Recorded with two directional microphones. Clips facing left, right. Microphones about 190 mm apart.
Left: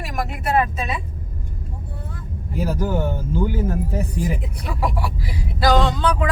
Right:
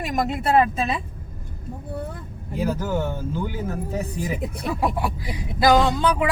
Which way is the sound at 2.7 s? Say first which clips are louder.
Left 2 dB; 15° left (ahead or behind).